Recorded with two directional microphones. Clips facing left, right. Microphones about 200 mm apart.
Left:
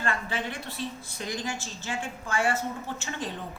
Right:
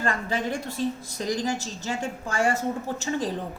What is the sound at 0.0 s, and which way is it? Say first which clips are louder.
A woman's voice: right 4 dB; 40° right (ahead or behind).